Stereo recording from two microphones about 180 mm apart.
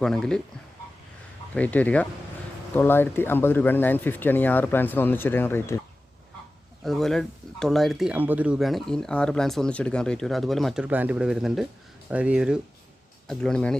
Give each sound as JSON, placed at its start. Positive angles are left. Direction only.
{"t": 0.0, "sound": "speech", "side_deg": 5}
{"t": 1.5, "sound": "speech", "side_deg": 10}
{"t": 6.8, "sound": "speech", "side_deg": 0}